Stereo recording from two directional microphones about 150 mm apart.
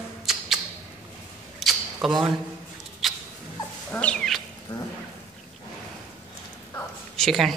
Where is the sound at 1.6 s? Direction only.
Centre (ahead or behind).